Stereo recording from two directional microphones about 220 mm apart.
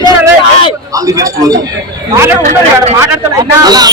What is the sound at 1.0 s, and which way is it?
Speech, 15° right (ahead or behind).